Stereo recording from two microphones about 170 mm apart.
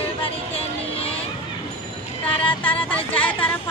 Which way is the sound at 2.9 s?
10° left (ahead or behind).